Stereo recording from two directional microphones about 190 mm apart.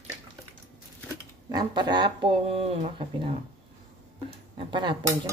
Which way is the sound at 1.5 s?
25° right (ahead or behind).